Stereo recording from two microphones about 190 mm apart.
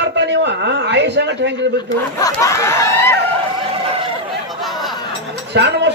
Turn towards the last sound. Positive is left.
turn(degrees=-60)  # may be behind; listen again after turning